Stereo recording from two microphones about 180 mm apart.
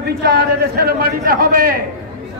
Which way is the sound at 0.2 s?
60° right (ahead or behind).